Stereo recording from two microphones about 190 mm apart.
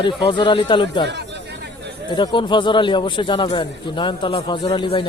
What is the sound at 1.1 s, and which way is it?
Chatter, 65° right (ahead or behind).